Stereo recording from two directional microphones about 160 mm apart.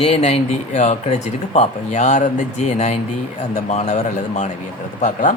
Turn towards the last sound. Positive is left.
turn(degrees=55)  # may be behind; listen again after turning